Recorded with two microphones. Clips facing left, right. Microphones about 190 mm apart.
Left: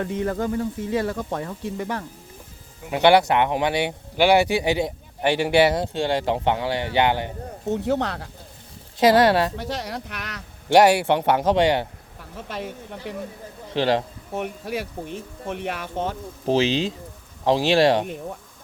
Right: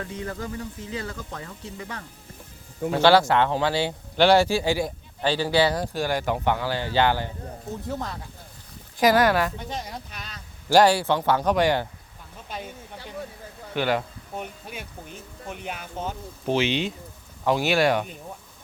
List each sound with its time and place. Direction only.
0.0 s speech: 55° left (ahead or behind)
2.9 s speech: 20° left (ahead or behind)
7.7 s speech: 75° left (ahead or behind)
9.0 s speech: 25° left (ahead or behind)
9.6 s speech: 75° left (ahead or behind)
10.7 s speech: 20° left (ahead or behind)
12.4 s speech: 75° left (ahead or behind)
13.7 s speech: 30° left (ahead or behind)
14.3 s speech: 75° left (ahead or behind)
15.0 s speech: centre (ahead or behind)
15.6 s speech: 70° left (ahead or behind)
16.5 s speech: 35° left (ahead or behind)